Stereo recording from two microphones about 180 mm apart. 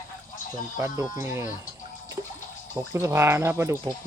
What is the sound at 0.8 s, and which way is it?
Speech, 15° right (ahead or behind).